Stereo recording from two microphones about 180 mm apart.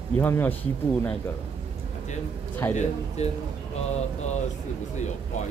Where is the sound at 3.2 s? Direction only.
40° left (ahead or behind).